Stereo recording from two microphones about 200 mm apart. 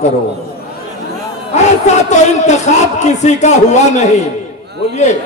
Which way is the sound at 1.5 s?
35° left (ahead or behind).